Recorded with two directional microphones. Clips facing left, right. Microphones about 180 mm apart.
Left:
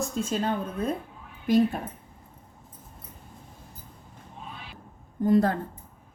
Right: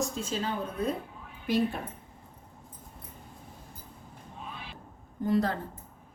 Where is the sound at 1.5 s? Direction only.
45° left (ahead or behind).